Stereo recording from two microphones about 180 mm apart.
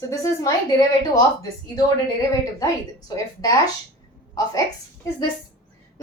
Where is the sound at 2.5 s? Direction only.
20° left (ahead or behind).